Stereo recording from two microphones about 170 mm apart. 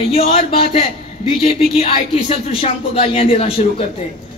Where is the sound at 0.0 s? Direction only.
35° left (ahead or behind).